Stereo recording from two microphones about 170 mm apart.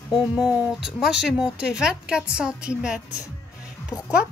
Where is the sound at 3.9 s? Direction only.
20° left (ahead or behind).